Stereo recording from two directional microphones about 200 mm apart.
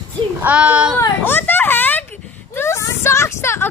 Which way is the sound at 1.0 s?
10° left (ahead or behind).